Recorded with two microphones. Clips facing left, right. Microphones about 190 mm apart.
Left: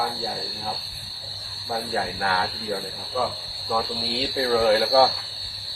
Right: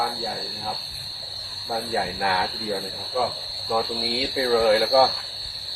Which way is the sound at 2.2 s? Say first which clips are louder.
Right 1 dB; 15° right (ahead or behind).